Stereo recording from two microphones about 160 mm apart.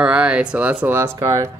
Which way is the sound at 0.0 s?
5° right (ahead or behind).